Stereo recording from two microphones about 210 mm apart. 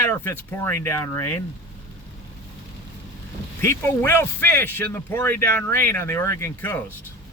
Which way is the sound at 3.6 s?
10° left (ahead or behind).